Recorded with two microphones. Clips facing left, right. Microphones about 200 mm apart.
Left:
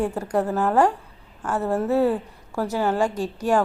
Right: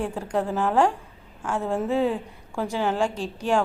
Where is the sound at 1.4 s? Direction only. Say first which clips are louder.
Left 2 dB; 10° right (ahead or behind).